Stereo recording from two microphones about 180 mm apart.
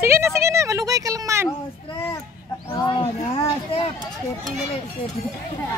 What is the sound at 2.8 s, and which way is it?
Speech, 20° left (ahead or behind).